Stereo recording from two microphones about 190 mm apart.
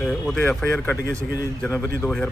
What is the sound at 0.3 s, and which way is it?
Speech, 10° left (ahead or behind).